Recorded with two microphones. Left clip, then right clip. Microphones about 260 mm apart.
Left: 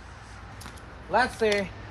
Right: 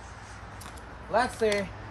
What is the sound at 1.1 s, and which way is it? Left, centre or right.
Speech, centre.